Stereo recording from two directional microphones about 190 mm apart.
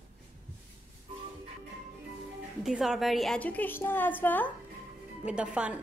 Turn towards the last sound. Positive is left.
turn(degrees=-5)  # may be behind; listen again after turning